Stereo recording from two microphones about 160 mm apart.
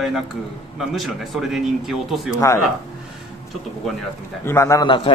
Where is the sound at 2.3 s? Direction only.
20° left (ahead or behind).